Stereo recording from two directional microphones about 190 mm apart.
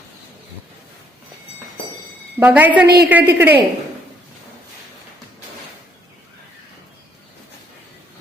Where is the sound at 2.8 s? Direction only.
55° right (ahead or behind).